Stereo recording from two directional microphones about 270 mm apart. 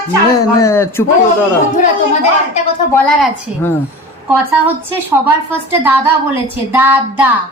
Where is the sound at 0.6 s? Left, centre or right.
Centre.